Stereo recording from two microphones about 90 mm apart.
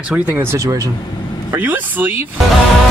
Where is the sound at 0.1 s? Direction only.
20° right (ahead or behind).